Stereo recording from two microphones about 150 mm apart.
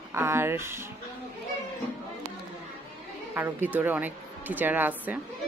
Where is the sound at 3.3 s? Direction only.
15° right (ahead or behind).